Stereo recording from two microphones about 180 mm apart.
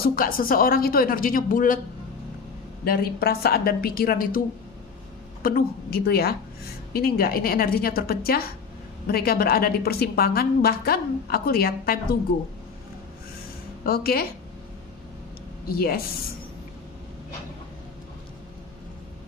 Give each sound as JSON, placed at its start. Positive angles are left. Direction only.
{"t": 0.0, "sound": "a woman's voice", "side_deg": 55}
{"t": 2.8, "sound": "a woman's voice", "side_deg": 60}
{"t": 5.4, "sound": "a woman's voice", "side_deg": 55}
{"t": 13.8, "sound": "a woman's voice", "side_deg": 55}
{"t": 15.7, "sound": "a woman's voice", "side_deg": 55}